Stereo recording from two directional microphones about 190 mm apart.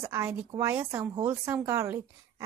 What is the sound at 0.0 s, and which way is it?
Speech, 15° right (ahead or behind).